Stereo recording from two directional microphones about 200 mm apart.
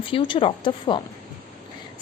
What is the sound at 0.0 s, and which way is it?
A woman's voice, 25° left (ahead or behind).